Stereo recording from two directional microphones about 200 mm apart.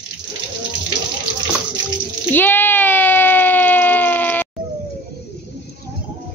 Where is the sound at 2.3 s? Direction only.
10° left (ahead or behind).